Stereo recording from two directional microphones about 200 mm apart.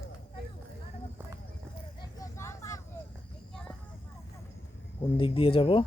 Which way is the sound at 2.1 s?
15° left (ahead or behind).